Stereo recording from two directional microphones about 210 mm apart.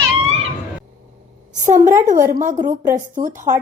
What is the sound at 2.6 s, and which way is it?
Speech, 20° right (ahead or behind).